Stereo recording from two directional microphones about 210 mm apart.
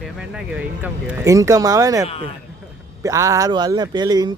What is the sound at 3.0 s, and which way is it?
Speech, 15° right (ahead or behind).